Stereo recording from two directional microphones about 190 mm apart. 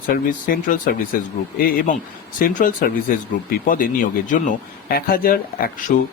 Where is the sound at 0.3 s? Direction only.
45° left (ahead or behind).